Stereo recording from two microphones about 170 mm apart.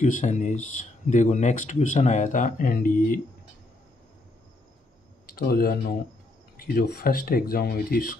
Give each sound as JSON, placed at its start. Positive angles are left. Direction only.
{"t": 0.0, "sound": "speech", "side_deg": 45}
{"t": 5.3, "sound": "speech", "side_deg": 65}